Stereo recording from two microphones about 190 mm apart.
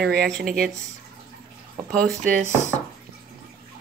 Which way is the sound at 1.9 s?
5° left (ahead or behind).